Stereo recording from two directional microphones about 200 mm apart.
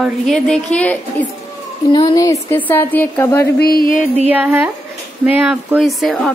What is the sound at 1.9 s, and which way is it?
A woman's voice, 20° left (ahead or behind).